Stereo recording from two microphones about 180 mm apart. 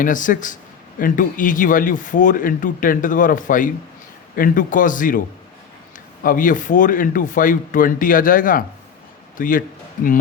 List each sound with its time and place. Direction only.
0.0 s a man's voice: 45° left (ahead or behind)
6.2 s a man's voice: 50° left (ahead or behind)